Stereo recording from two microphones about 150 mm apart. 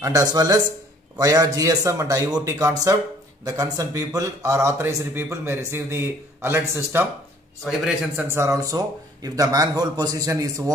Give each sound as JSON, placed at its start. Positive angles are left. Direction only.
{"t": 0.0, "sound": "a man's voice", "side_deg": -20}
{"t": 8.2, "sound": "a man's voice", "side_deg": -20}